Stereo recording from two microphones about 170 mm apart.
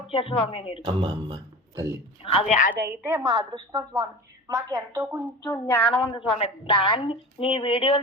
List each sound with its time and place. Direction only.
0.1 s a woman's voice: 30° left (ahead or behind)
0.8 s a woman's voice: 25° right (ahead or behind)
2.2 s a woman's voice: 35° left (ahead or behind)
2.7 s a woman's voice: 75° right (ahead or behind)
3.0 s a woman's voice: 15° right (ahead or behind)
3.3 s a woman's voice: 25° right (ahead or behind)
5.5 s a sound: 15° left (ahead or behind)
6.1 s a woman's voice: 35° left (ahead or behind)